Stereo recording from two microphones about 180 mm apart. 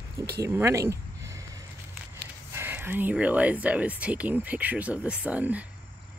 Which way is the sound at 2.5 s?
10° right (ahead or behind).